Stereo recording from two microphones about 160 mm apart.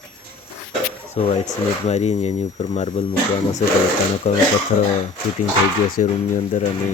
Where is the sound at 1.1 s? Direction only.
45° left (ahead or behind).